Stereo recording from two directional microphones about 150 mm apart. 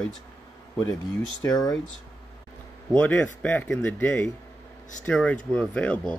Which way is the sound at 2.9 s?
10° left (ahead or behind).